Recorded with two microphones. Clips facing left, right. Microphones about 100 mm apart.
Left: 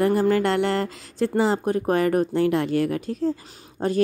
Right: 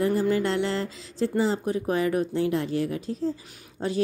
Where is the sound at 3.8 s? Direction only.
45° left (ahead or behind).